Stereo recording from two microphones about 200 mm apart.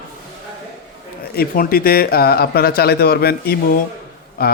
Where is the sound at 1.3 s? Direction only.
50° left (ahead or behind).